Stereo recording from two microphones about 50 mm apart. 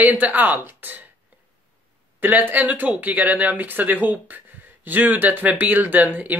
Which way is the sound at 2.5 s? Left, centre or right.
Right.